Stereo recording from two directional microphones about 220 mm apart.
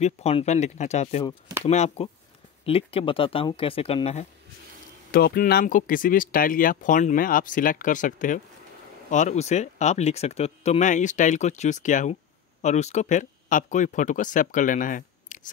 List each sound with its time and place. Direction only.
0.0 s speech: 30° left (ahead or behind)
5.1 s speech: 45° left (ahead or behind)